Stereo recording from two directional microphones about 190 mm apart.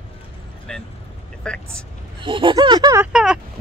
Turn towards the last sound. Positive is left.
turn(degrees=-5)  # may be behind; listen again after turning